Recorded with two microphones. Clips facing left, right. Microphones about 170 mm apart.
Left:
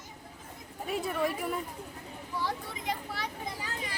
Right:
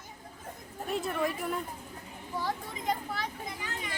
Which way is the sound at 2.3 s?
50° right (ahead or behind).